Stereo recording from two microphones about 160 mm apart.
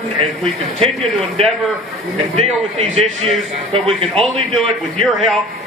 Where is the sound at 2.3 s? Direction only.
40° right (ahead or behind).